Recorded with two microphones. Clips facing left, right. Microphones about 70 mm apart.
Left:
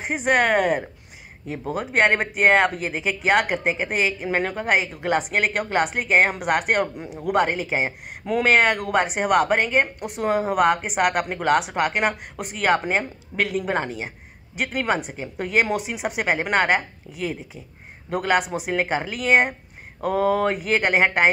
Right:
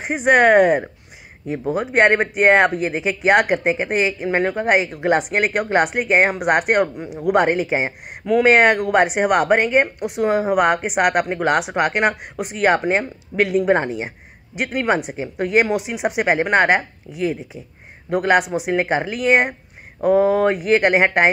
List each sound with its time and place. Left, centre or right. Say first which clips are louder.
0.0 s speech: right 6 dB; centre
7.5 s speech: right 4 dB; right
13.7 s speech: right 7 dB; right
14.8 s speech: right 5 dB; centre